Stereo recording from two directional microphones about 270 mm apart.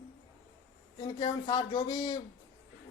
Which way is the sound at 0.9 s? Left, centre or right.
Centre.